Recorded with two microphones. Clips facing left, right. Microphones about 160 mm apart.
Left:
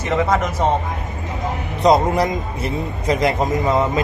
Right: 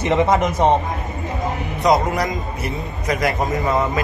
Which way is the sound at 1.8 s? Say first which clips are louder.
Left 3 dB; 30° left (ahead or behind).